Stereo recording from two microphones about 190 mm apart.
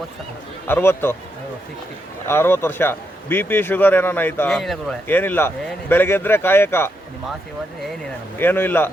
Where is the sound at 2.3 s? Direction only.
10° left (ahead or behind).